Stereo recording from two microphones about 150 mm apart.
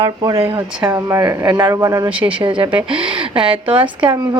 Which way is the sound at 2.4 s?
35° right (ahead or behind).